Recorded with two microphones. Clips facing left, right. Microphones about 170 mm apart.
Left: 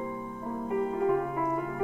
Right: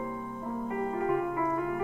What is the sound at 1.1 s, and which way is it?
Keyboard, centre (ahead or behind).